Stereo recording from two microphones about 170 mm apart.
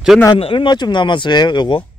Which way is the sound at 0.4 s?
30° left (ahead or behind).